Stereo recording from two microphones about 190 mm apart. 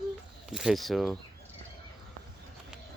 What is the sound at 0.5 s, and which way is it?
Speech, centre (ahead or behind).